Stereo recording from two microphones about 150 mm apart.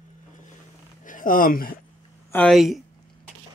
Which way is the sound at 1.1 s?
65° left (ahead or behind).